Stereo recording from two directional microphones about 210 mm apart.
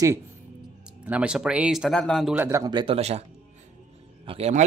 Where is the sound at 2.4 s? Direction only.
15° right (ahead or behind); by 3.2 s 30° right (ahead or behind).